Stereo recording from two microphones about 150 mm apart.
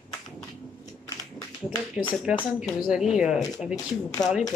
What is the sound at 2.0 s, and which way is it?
Speech, 5° right (ahead or behind).